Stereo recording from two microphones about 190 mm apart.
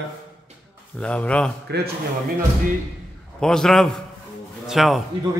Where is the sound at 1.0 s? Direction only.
5° left (ahead or behind).